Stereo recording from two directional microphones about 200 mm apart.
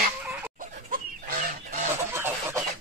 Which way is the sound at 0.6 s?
45° right (ahead or behind).